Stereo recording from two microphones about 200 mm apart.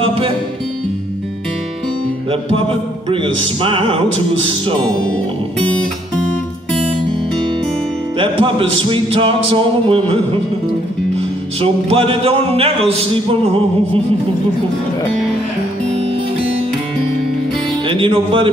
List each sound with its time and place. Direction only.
0.0 s music: 25° right (ahead or behind)
2.5 s music: 25° right (ahead or behind)
4.8 s music: 5° left (ahead or behind)
8.2 s music: 25° right (ahead or behind)
17.8 s music: 25° right (ahead or behind)